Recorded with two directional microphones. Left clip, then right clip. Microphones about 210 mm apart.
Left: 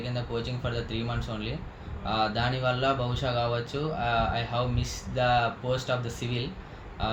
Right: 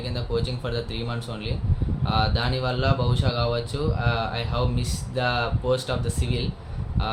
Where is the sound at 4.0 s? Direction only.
15° right (ahead or behind).